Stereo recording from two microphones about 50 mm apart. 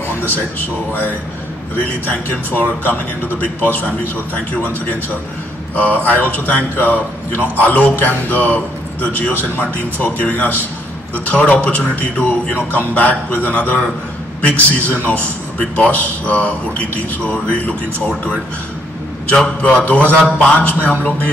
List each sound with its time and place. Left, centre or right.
2.0 s a man's voice: left
5.8 s a man's voice: left
19.3 s a man's voice: left
19.8 s a man's voice: left